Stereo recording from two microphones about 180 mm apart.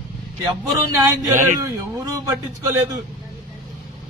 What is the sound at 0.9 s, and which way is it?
A man's voice, 15° right (ahead or behind).